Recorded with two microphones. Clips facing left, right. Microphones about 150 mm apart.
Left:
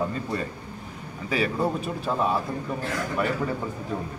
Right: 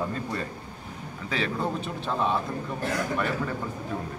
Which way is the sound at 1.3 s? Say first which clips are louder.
Left 4 dB; 5° left (ahead or behind).